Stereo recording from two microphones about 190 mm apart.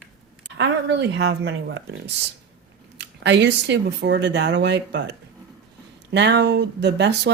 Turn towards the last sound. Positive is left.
turn(degrees=-65)  # may be behind; listen again after turning